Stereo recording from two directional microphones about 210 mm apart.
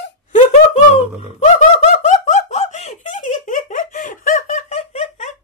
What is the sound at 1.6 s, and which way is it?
Giggle, 35° left (ahead or behind).